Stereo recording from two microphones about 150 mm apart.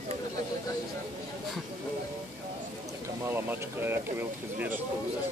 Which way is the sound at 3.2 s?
15° right (ahead or behind).